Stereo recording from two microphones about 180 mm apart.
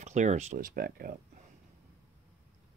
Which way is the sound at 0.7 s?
55° right (ahead or behind).